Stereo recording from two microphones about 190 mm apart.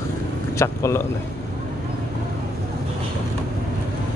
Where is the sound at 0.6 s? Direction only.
15° left (ahead or behind).